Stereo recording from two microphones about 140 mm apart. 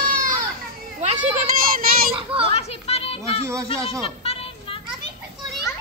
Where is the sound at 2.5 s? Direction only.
45° left (ahead or behind).